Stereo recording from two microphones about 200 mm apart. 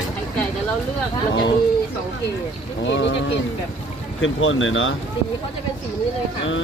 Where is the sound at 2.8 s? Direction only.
65° left (ahead or behind).